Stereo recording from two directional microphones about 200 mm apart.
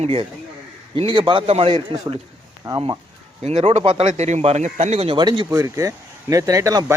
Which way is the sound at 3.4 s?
30° right (ahead or behind).